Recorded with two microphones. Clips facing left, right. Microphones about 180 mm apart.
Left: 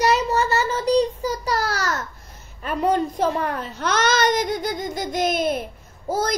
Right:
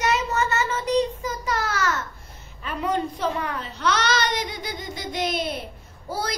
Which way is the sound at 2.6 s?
45° left (ahead or behind).